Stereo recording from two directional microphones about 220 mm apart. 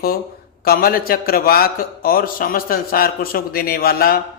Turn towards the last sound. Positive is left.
turn(degrees=45)  # may be behind; listen again after turning